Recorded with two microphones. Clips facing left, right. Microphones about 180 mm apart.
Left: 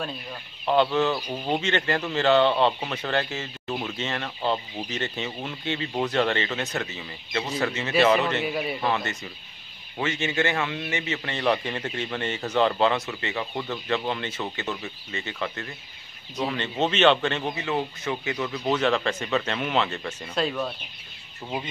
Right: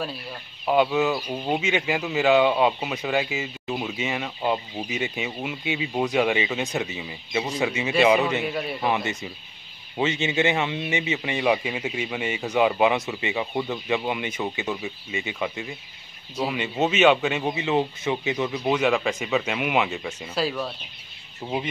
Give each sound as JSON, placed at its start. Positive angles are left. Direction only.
{"t": 0.7, "sound": "speech", "side_deg": -10}
{"t": 8.5, "sound": "a man's voice", "side_deg": 0}
{"t": 8.8, "sound": "speech", "side_deg": -15}